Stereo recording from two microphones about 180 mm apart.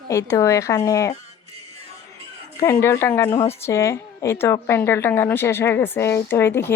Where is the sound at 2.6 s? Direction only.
15° left (ahead or behind).